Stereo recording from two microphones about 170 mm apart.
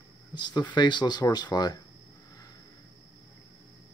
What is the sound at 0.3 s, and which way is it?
Speech, 25° left (ahead or behind).